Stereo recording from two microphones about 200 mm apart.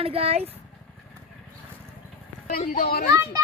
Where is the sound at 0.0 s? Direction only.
30° right (ahead or behind).